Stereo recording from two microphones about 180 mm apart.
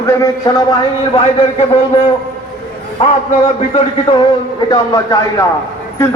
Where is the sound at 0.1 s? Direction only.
20° left (ahead or behind).